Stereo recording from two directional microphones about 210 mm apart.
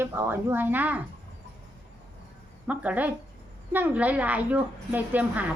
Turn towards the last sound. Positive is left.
turn(degrees=-5)  # may be behind; listen again after turning